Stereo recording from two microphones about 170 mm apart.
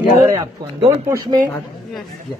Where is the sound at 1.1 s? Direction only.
20° right (ahead or behind).